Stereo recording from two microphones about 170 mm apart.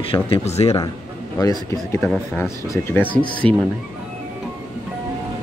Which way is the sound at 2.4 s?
15° left (ahead or behind).